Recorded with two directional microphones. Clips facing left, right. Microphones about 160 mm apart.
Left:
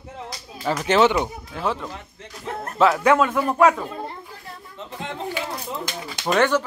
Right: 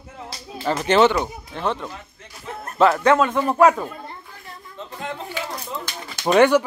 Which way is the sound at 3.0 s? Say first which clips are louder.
Right 1 dB; 5° left (ahead or behind).